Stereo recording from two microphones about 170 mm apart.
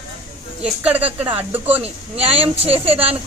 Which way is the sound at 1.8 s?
35° right (ahead or behind).